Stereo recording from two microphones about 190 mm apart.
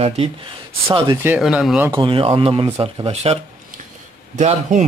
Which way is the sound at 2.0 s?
25° right (ahead or behind).